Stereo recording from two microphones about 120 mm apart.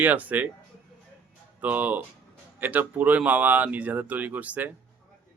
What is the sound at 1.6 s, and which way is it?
Speech, 15° right (ahead or behind).